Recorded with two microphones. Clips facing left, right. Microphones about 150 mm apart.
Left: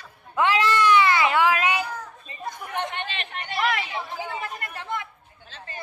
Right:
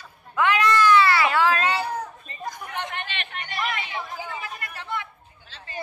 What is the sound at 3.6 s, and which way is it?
Chatter, 80° left.